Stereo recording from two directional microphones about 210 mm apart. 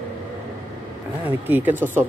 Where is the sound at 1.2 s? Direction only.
10° right (ahead or behind).